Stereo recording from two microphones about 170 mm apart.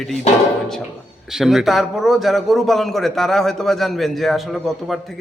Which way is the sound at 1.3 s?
Centre (ahead or behind).